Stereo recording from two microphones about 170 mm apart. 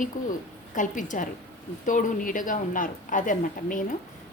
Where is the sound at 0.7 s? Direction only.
50° left (ahead or behind).